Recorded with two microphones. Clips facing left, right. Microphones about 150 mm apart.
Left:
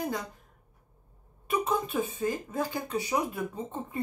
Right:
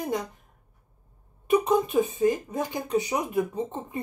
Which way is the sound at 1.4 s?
20° right (ahead or behind).